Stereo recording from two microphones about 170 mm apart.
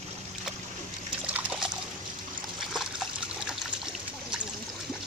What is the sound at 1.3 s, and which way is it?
Trickle, 5° right (ahead or behind).